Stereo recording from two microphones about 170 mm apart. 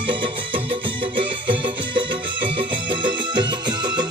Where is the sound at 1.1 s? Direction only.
30° right (ahead or behind).